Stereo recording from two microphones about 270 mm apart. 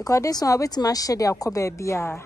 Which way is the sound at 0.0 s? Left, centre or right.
Centre.